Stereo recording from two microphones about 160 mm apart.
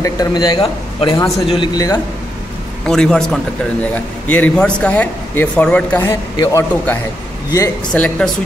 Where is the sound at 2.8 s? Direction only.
5° left (ahead or behind).